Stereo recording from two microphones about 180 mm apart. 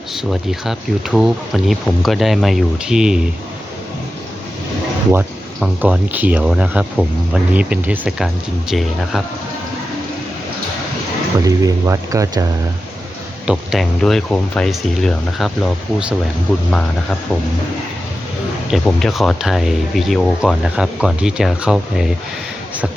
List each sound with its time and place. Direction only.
0.3 s speech: centre (ahead or behind)
5.5 s speech: 5° right (ahead or behind)
11.4 s speech: 20° right (ahead or behind)
13.5 s speech: centre (ahead or behind)
18.7 s speech: centre (ahead or behind)